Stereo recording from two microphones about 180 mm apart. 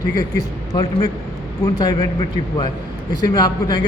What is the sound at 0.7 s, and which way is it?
A man's voice, 25° left (ahead or behind).